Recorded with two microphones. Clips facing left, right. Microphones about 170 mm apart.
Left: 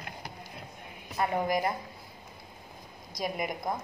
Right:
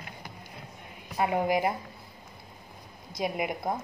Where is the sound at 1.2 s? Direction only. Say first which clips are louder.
Right 2 dB; 10° right (ahead or behind).